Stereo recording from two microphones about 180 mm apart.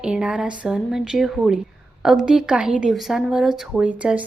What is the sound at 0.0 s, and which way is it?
A woman's voice, 5° right (ahead or behind).